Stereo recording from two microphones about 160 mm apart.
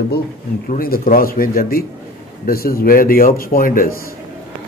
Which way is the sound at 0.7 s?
65° left (ahead or behind).